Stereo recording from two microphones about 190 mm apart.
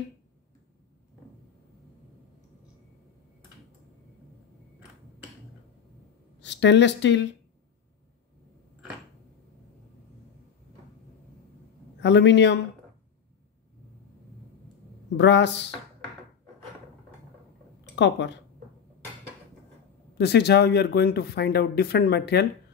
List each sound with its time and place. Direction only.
6.4 s speech: 70° left (ahead or behind)
12.0 s a man's voice: 65° left (ahead or behind)
15.1 s a man's voice: 65° left (ahead or behind)
17.9 s a man's voice: 65° left (ahead or behind)
20.2 s speech: 60° left (ahead or behind)